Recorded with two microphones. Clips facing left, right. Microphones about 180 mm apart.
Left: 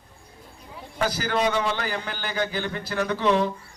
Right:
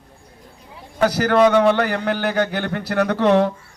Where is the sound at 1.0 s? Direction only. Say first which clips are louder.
Right 9 dB; 65° right (ahead or behind).